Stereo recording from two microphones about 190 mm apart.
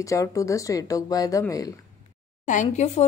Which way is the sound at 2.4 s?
40° left (ahead or behind).